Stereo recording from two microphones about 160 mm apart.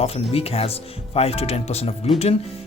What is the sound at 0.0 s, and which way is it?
Speech, 40° left (ahead or behind).